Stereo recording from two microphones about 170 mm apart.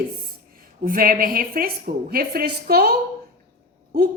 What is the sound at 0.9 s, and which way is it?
A woman's voice, 55° right (ahead or behind).